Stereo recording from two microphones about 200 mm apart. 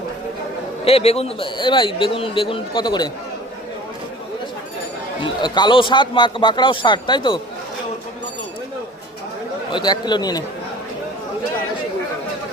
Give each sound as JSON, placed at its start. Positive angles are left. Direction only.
{"t": 0.9, "sound": "a man's voice", "side_deg": 30}
{"t": 5.2, "sound": "a man's voice", "side_deg": 20}
{"t": 9.7, "sound": "a man's voice", "side_deg": 20}